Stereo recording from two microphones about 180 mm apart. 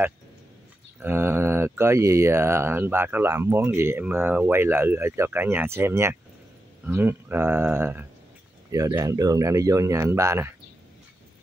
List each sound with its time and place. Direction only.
1.0 s speech: 15° right (ahead or behind)